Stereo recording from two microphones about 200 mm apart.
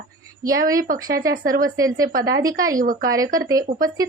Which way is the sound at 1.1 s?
15° right (ahead or behind).